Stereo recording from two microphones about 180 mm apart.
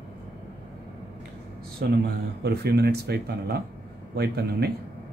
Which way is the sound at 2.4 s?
65° right (ahead or behind).